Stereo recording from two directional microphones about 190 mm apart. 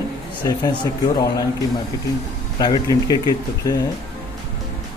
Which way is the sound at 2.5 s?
20° left (ahead or behind).